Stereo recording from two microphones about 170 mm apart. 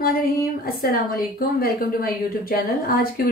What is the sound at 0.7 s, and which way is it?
A woman's voice, 60° left (ahead or behind).